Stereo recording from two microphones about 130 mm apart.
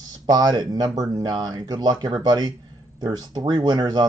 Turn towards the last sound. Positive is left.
turn(degrees=-35)  # may be behind; listen again after turning